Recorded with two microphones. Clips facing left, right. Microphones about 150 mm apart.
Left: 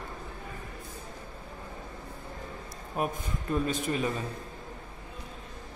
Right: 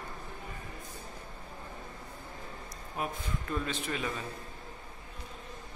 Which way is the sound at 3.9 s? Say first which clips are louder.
Left 5 dB; 30° left (ahead or behind).